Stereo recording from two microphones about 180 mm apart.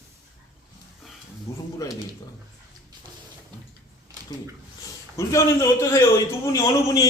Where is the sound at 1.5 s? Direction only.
15° left (ahead or behind).